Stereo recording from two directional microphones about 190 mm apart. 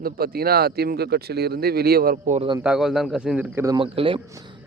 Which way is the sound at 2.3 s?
30° right (ahead or behind).